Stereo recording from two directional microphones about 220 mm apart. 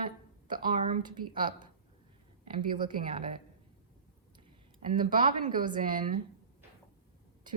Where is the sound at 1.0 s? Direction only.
20° right (ahead or behind).